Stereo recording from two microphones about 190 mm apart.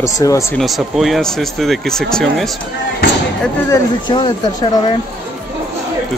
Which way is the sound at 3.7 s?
20° left (ahead or behind).